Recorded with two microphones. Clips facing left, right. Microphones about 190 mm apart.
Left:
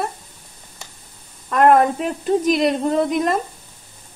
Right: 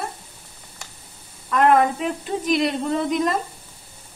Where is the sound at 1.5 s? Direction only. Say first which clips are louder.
Left 3 dB; 50° left (ahead or behind).